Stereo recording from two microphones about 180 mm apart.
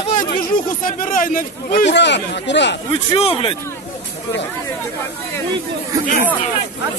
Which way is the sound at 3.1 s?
30° left (ahead or behind).